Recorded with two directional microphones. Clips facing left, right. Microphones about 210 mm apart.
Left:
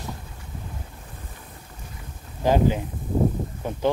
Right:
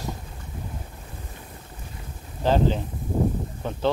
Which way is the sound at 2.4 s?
10° left (ahead or behind).